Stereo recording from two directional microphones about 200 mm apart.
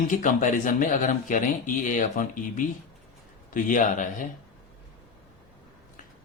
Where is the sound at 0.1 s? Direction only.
40° left (ahead or behind).